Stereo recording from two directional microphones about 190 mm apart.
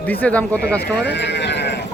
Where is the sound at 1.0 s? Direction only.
65° left (ahead or behind).